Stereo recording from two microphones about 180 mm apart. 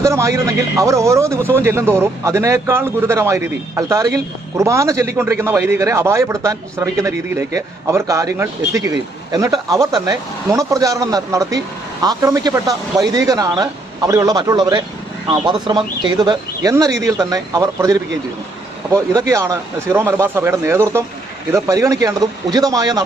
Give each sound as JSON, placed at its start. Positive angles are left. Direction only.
{"t": 0.0, "sound": "a man's voice", "side_deg": -15}